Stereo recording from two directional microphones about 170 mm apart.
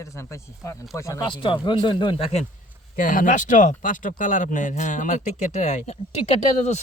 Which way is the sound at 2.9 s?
50° left (ahead or behind).